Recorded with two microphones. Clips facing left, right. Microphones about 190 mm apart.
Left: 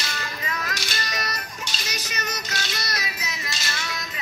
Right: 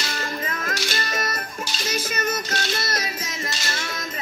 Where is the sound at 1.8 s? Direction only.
50° right (ahead or behind).